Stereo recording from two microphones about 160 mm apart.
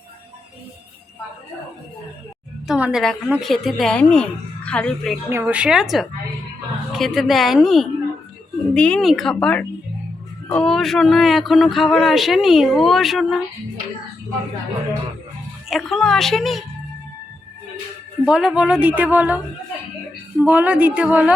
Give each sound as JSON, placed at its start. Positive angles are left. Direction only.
{"t": 2.6, "sound": "a woman's voice", "side_deg": -5}
{"t": 5.3, "sound": "speech", "side_deg": -10}
{"t": 15.7, "sound": "speech", "side_deg": 0}
{"t": 18.3, "sound": "speech", "side_deg": -5}
{"t": 20.4, "sound": "speech", "side_deg": -10}